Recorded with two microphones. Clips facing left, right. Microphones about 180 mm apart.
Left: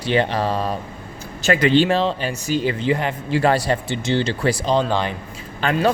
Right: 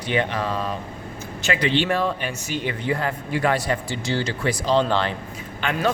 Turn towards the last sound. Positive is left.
turn(degrees=35)  # may be behind; listen again after turning